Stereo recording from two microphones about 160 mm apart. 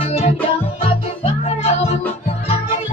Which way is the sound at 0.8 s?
40° left (ahead or behind).